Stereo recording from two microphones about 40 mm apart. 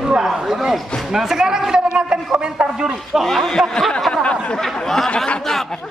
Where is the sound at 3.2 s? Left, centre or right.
Centre.